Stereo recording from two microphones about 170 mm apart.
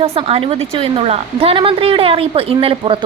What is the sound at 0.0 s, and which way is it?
Speech, 35° right (ahead or behind).